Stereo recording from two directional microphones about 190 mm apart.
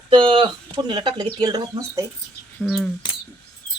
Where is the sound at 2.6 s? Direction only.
Centre (ahead or behind).